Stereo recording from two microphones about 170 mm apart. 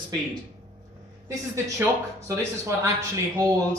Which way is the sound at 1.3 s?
20° right (ahead or behind).